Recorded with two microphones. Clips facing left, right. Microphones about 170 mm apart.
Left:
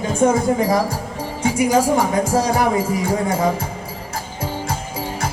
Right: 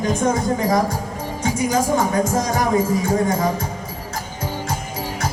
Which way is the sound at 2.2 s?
30° left (ahead or behind).